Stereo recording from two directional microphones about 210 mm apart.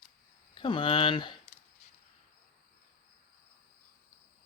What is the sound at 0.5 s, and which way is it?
Speech, 25° left (ahead or behind).